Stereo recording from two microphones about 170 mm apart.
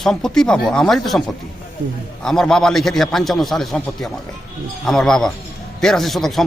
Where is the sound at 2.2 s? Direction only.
5° left (ahead or behind).